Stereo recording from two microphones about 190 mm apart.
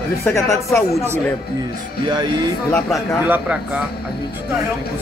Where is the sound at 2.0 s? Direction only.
25° right (ahead or behind).